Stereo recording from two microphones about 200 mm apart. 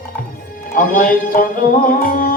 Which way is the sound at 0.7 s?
45° left (ahead or behind).